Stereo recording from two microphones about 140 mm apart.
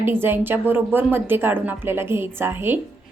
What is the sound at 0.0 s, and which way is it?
Speech, 15° right (ahead or behind).